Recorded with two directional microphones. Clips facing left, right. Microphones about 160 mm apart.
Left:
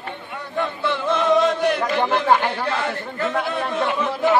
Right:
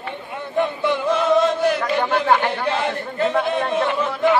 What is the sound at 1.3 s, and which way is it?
Speech, centre (ahead or behind).